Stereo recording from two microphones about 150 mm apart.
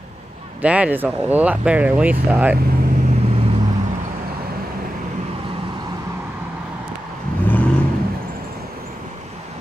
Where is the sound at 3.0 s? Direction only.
45° right (ahead or behind).